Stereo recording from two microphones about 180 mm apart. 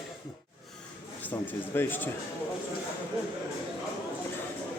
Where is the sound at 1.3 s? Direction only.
10° left (ahead or behind).